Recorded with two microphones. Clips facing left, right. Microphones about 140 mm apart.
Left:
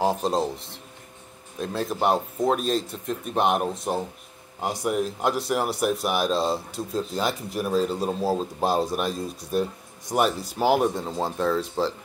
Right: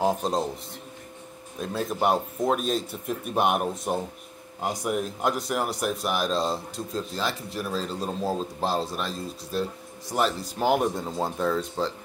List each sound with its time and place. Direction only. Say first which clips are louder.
0.0 s speech: left 1 dB; centre (ahead or behind)
1.6 s speech: left 1 dB; centre (ahead or behind)
7.2 s a man's voice: left 4 dB; 20° left (ahead or behind); by 11.6 s centre (ahead or behind)